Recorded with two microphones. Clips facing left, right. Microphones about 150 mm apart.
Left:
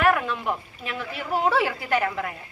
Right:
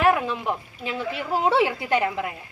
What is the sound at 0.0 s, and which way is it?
Speech, 20° right (ahead or behind).